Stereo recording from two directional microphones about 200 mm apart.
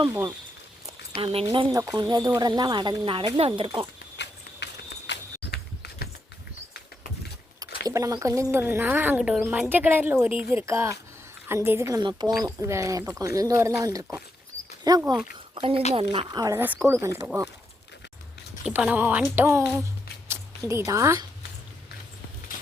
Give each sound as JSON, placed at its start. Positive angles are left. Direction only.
{"t": 0.0, "sound": "speech", "side_deg": -15}
{"t": 1.2, "sound": "speech", "side_deg": -30}
{"t": 4.2, "sound": "horse", "side_deg": 60}
{"t": 7.9, "sound": "speech", "side_deg": -15}
{"t": 12.3, "sound": "speech", "side_deg": 0}
{"t": 12.5, "sound": "speech", "side_deg": -15}
{"t": 18.6, "sound": "speech", "side_deg": -5}
{"t": 19.7, "sound": "a sound", "side_deg": -10}